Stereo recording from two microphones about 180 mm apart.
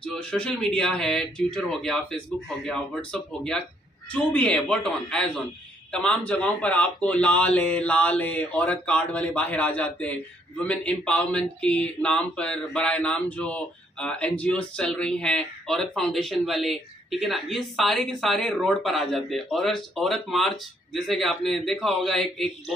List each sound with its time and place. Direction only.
0.0 s a man's voice: 5° left (ahead or behind)